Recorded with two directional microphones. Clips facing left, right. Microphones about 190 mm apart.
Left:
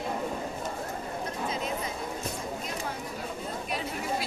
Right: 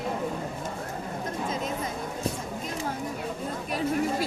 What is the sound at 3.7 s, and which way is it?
Chatter, 40° right (ahead or behind).